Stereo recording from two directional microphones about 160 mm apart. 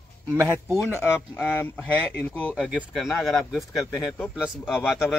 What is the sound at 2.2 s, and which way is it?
A man's voice, 10° left (ahead or behind).